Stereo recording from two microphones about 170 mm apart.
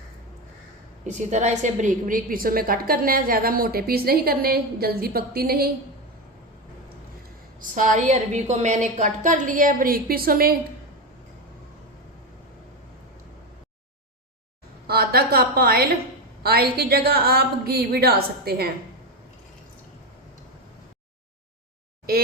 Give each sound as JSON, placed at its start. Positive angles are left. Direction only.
{"t": 1.0, "sound": "a woman's voice", "side_deg": -45}
{"t": 7.6, "sound": "a woman's voice", "side_deg": -50}
{"t": 14.8, "sound": "a sound", "side_deg": -65}
{"t": 16.4, "sound": "a woman's voice", "side_deg": -65}